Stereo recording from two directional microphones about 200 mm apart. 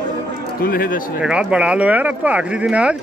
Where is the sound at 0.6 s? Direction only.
45° left (ahead or behind).